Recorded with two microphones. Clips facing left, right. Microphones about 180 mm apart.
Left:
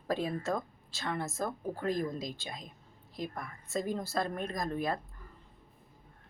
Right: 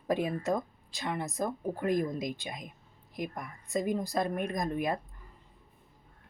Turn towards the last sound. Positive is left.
turn(degrees=-15)  # may be behind; listen again after turning